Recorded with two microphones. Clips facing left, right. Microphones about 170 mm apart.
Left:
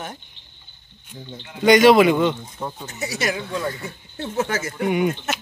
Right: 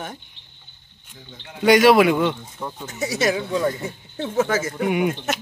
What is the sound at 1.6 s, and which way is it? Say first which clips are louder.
Speech: left 1 dB; 5° right (ahead or behind).